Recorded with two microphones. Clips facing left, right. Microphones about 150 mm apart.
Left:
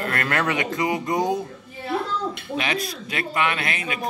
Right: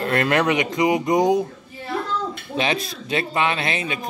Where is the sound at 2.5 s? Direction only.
25° right (ahead or behind).